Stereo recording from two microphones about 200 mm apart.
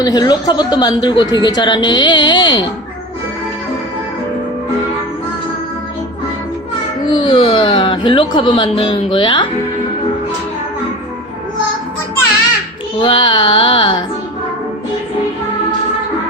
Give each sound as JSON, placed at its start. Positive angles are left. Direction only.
{"t": 0.0, "sound": "speech", "side_deg": 20}
{"t": 7.1, "sound": "speech", "side_deg": 25}
{"t": 13.0, "sound": "speech", "side_deg": 25}